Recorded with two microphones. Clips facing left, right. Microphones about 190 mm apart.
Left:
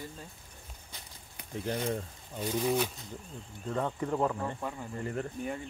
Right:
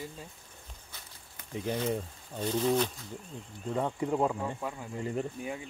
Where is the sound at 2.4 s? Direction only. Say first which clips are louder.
Right 2 dB; 10° left (ahead or behind).